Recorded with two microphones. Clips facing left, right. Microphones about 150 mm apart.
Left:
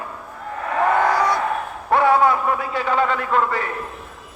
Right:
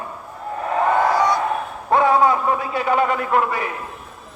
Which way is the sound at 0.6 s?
25° right (ahead or behind).